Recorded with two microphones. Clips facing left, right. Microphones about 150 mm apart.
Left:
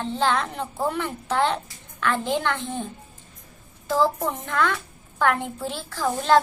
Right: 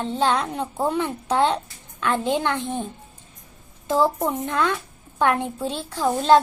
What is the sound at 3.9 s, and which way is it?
A woman's voice, 20° right (ahead or behind).